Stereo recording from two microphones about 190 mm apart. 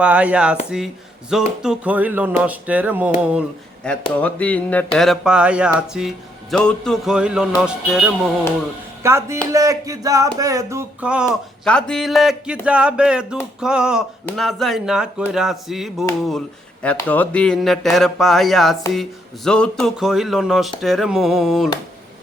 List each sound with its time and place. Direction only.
0.0 s speech: 5° right (ahead or behind)
4.2 s speech: 10° left (ahead or behind)
9.0 s speech: 15° right (ahead or behind)
9.5 s music: 15° right (ahead or behind)
10.3 s speech: 15° right (ahead or behind)
11.3 s speech: 5° left (ahead or behind)